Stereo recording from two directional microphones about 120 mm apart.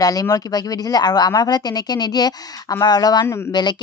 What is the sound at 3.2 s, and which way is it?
Speech, 20° left (ahead or behind).